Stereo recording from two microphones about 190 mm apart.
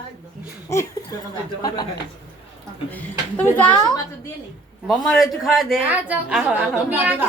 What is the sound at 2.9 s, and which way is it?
Speech, 10° left (ahead or behind).